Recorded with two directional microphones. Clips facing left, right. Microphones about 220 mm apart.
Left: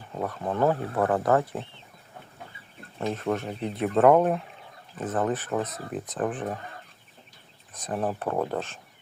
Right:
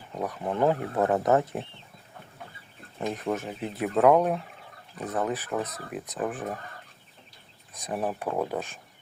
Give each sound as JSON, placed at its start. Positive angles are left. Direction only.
{"t": 0.2, "sound": "speech", "side_deg": -15}
{"t": 3.2, "sound": "speech", "side_deg": -5}
{"t": 7.7, "sound": "speech", "side_deg": -10}